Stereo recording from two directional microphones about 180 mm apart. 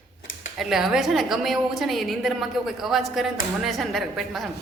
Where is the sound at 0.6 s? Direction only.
Centre (ahead or behind).